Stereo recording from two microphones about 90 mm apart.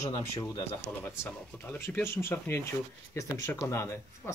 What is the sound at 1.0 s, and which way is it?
Speech, 25° left (ahead or behind).